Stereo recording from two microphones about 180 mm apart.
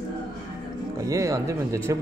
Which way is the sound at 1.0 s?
15° right (ahead or behind).